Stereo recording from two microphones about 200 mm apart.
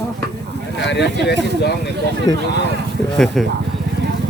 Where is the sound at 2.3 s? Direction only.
20° left (ahead or behind).